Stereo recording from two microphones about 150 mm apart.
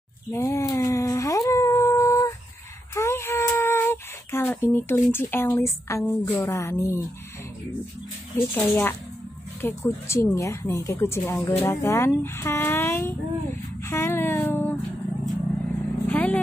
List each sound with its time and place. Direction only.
0.3 s a sound: 20° left (ahead or behind)
5.1 s speech: 15° left (ahead or behind)
8.5 s speech: 15° left (ahead or behind)
16.1 s vehicle: 10° left (ahead or behind)